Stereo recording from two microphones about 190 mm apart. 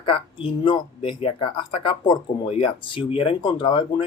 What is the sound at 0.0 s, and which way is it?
Speech, 30° left (ahead or behind).